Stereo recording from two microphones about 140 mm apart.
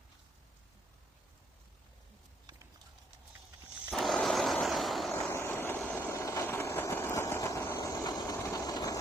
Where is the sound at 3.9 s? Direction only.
Centre (ahead or behind).